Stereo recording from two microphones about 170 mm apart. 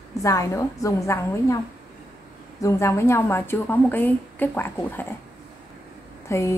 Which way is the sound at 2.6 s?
15° left (ahead or behind).